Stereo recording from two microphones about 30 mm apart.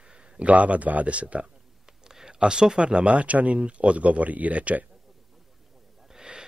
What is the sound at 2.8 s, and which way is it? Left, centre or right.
Speech, right.